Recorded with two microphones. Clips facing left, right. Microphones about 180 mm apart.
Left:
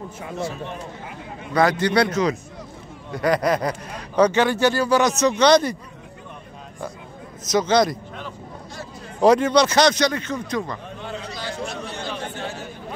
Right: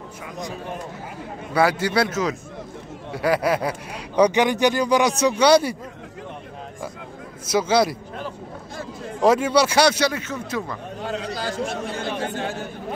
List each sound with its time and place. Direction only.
1.5 s speech: 10° right (ahead or behind)
7.4 s speech: 10° right (ahead or behind)
9.2 s speech: 5° right (ahead or behind)
11.5 s chatter: 50° right (ahead or behind)